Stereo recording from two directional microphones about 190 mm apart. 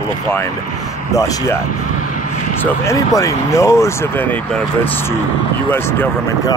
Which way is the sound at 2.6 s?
15° left (ahead or behind).